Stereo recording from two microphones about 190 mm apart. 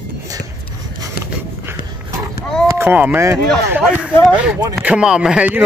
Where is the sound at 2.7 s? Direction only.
10° right (ahead or behind).